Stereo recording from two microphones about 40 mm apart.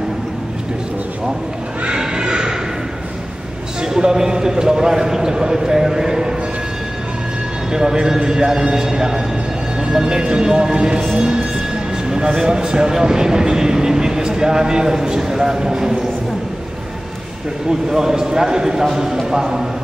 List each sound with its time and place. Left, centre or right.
1.9 s neigh: centre
3.8 s a man's voice: centre
7.7 s speech: centre
12.1 s speech: centre
17.6 s speech: centre